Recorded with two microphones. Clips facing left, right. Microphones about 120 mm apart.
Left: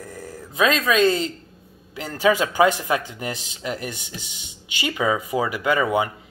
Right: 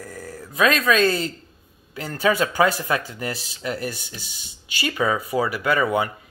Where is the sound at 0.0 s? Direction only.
25° left (ahead or behind).